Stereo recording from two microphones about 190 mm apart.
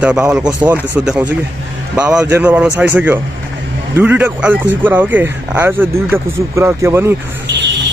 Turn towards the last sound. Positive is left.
turn(degrees=-65)  # may be behind; listen again after turning